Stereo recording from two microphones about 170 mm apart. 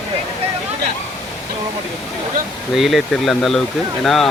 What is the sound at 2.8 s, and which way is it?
Speech, centre (ahead or behind).